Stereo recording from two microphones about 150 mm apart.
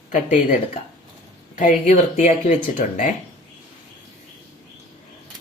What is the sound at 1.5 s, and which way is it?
Speech, 60° left (ahead or behind).